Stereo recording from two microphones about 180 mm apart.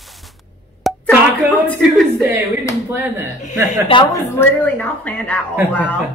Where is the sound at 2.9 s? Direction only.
15° right (ahead or behind).